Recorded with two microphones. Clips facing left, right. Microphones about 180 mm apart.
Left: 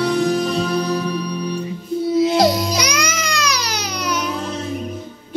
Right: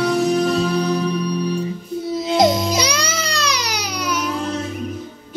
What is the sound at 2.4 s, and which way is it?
Music, 25° right (ahead or behind).